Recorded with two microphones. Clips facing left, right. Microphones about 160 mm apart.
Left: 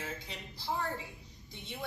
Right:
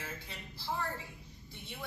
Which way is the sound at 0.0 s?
20° left (ahead or behind).